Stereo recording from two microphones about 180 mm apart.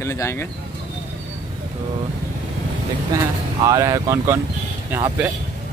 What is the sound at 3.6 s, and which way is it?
Speech, 20° right (ahead or behind).